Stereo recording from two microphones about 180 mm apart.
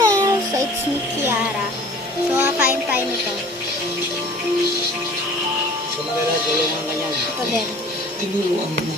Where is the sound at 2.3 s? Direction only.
10° right (ahead or behind).